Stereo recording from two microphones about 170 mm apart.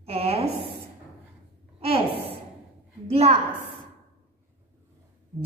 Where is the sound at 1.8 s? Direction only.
35° right (ahead or behind).